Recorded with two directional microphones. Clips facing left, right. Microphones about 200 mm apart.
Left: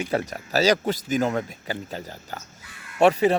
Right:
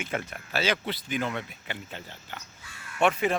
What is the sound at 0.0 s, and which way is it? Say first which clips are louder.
A man's voice: left 7 dB; 40° left (ahead or behind).